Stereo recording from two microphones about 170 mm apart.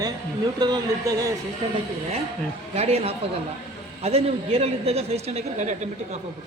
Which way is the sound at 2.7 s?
35° right (ahead or behind).